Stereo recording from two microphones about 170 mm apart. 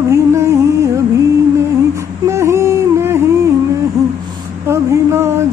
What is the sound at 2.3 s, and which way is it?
Music, 15° right (ahead or behind).